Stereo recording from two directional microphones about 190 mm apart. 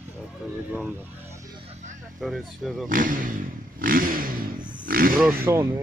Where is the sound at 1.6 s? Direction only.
35° right (ahead or behind).